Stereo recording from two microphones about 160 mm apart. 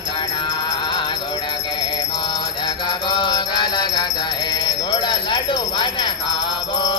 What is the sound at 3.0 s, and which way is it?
Mantra, 30° left (ahead or behind).